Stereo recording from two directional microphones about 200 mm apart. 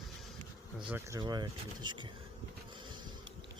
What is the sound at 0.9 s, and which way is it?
Speech, 10° right (ahead or behind).